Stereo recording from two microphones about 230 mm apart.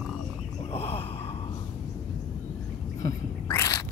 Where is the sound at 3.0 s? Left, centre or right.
Centre.